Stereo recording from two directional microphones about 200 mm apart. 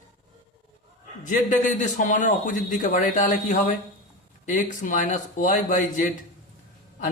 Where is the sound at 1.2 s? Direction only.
40° left (ahead or behind).